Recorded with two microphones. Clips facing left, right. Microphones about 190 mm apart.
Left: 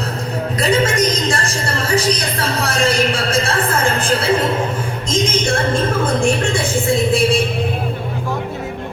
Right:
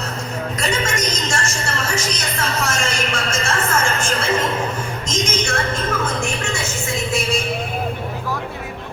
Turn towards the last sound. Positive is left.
turn(degrees=30)  # may be behind; listen again after turning